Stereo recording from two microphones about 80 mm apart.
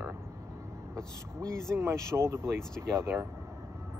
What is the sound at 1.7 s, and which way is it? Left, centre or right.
Speech, right.